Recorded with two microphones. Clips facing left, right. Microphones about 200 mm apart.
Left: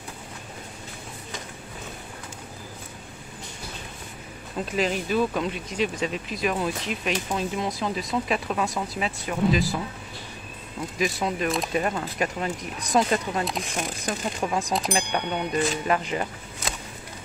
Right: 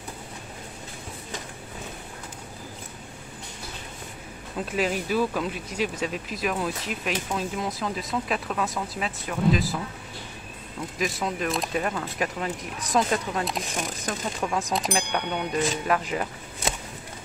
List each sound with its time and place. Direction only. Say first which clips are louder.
4.7 s speech: left 1 dB; 5° right (ahead or behind)
11.0 s speech: left 2 dB; centre (ahead or behind)
14.0 s speech: left 2 dB; 15° left (ahead or behind)
14.7 s speech: left 1 dB; centre (ahead or behind)